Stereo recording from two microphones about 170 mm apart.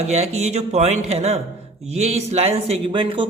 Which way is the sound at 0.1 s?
40° right (ahead or behind).